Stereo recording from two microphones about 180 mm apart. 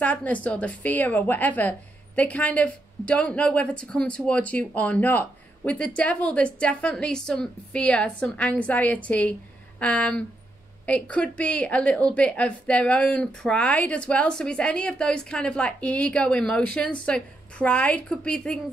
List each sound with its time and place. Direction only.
0.0 s a woman's voice: 10° left (ahead or behind)